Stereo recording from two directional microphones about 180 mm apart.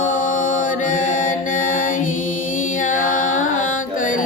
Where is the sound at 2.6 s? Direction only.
45° left (ahead or behind).